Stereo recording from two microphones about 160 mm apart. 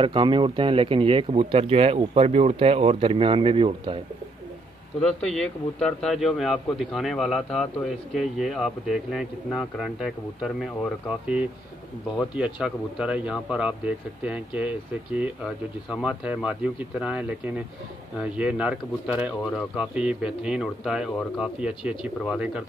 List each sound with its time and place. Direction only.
0.0 s speech: 30° right (ahead or behind)
5.0 s a man's voice: 5° left (ahead or behind)